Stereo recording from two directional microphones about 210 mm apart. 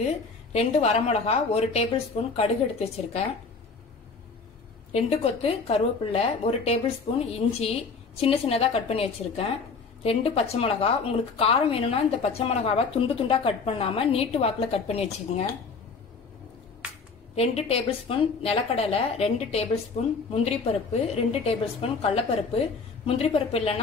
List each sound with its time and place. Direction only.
0.0 s a woman's voice: 30° left (ahead or behind)
4.9 s a woman's voice: 30° left (ahead or behind)
17.4 s a woman's voice: 30° left (ahead or behind)